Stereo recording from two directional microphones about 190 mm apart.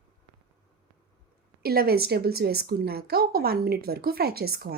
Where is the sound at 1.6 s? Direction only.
55° right (ahead or behind).